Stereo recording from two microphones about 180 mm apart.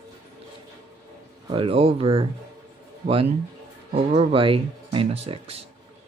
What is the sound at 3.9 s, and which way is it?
Speech, 35° right (ahead or behind).